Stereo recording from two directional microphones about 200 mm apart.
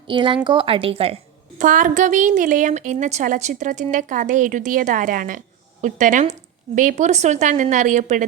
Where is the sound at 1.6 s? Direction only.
40° right (ahead or behind).